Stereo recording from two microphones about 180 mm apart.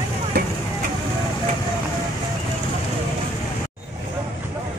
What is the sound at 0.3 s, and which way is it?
Speech, 60° right (ahead or behind).